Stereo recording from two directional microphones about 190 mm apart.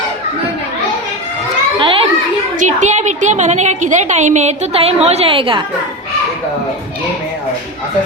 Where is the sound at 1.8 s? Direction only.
25° right (ahead or behind).